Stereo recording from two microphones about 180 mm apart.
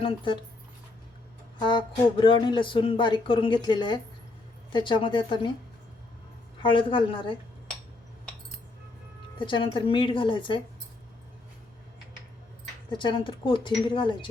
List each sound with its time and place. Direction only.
1.6 s speech: 25° left (ahead or behind)
6.6 s speech: 30° left (ahead or behind)
9.4 s speech: 25° left (ahead or behind)
12.9 s speech: 25° left (ahead or behind)